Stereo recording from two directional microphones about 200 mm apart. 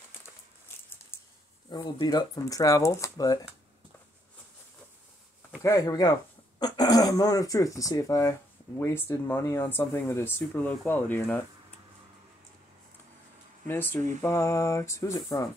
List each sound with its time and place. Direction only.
1.1 s a sound: 10° left (ahead or behind)
1.7 s speech: 20° left (ahead or behind)
5.6 s speech: 15° left (ahead or behind)
13.7 s speech: 10° left (ahead or behind)